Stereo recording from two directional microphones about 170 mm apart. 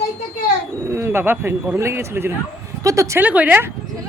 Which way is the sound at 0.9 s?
15° right (ahead or behind).